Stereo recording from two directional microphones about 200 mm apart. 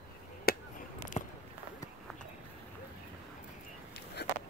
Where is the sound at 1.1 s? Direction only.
30° left (ahead or behind).